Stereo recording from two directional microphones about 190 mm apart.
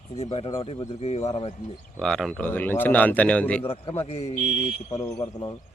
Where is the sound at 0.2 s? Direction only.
30° left (ahead or behind).